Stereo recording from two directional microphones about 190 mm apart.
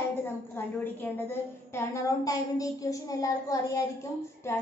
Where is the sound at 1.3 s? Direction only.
15° left (ahead or behind).